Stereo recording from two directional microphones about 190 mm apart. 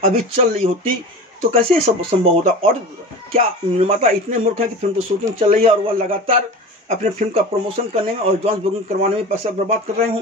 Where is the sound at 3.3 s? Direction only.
30° right (ahead or behind).